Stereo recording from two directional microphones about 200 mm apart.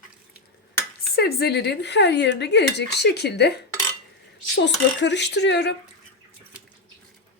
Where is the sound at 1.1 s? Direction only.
50° left (ahead or behind).